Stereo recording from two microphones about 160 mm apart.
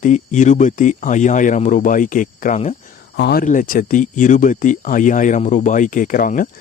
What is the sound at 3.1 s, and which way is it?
Speech, 70° left (ahead or behind).